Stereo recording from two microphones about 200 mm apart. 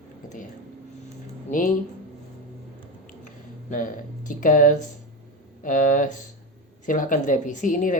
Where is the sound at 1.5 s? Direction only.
40° left (ahead or behind).